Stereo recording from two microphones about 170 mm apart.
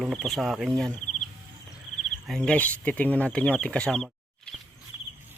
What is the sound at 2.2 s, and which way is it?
Speech, 5° left (ahead or behind).